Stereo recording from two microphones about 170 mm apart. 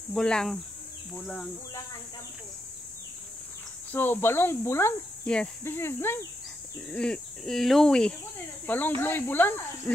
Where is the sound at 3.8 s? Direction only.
15° left (ahead or behind).